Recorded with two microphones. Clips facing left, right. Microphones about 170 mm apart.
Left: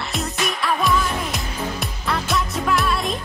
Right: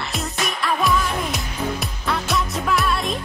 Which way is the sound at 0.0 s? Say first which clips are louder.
Left 1 dB; centre (ahead or behind).